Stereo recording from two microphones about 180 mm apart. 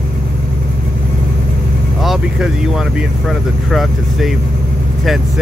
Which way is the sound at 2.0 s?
Centre (ahead or behind).